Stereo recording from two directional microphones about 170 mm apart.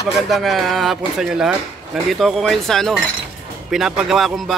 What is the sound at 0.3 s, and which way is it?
Speech, centre (ahead or behind).